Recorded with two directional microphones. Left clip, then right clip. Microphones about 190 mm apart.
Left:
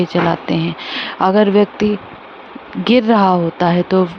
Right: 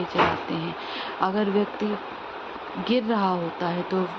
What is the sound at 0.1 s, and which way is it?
Speech, 50° left (ahead or behind).